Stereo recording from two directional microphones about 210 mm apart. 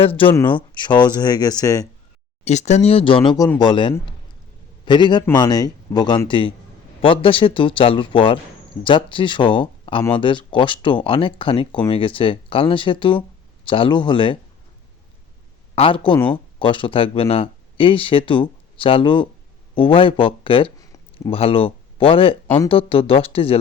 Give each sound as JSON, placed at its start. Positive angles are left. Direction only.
{"t": 0.2, "sound": "speech", "side_deg": 25}
{"t": 2.4, "sound": "speech", "side_deg": 35}
{"t": 15.7, "sound": "speech", "side_deg": 25}